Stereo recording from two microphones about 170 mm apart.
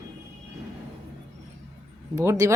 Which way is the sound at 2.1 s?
15° right (ahead or behind).